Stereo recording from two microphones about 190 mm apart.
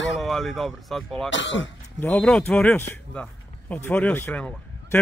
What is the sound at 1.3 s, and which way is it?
Speech, 75° left (ahead or behind).